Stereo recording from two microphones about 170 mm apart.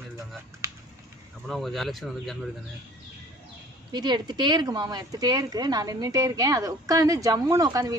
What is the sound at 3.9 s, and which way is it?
Speech, 25° right (ahead or behind).